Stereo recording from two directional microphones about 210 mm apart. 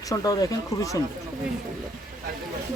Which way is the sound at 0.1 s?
15° left (ahead or behind).